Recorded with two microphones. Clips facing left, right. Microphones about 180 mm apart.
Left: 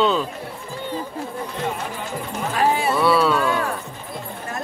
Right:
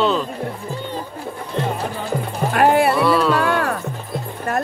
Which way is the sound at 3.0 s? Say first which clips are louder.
Right 1 dB; centre (ahead or behind).